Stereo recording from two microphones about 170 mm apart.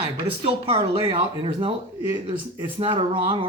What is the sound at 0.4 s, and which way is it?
Speech, 30° right (ahead or behind).